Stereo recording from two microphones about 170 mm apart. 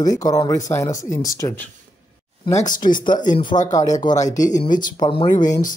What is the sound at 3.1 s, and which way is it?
Speech, 50° left (ahead or behind).